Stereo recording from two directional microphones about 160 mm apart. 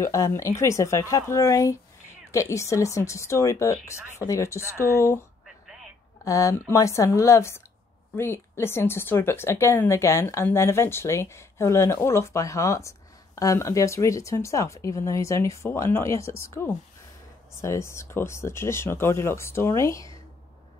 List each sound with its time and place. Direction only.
0.0 s speech: 20° left (ahead or behind)
6.2 s speech: 20° left (ahead or behind)